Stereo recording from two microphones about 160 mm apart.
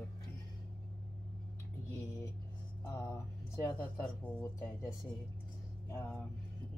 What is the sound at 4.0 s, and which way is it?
Speech, 10° left (ahead or behind).